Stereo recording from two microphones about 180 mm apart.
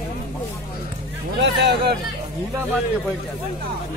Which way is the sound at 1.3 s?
70° right (ahead or behind).